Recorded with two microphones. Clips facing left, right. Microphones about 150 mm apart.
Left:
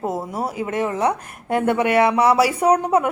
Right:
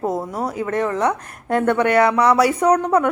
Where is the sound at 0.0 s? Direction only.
5° left (ahead or behind).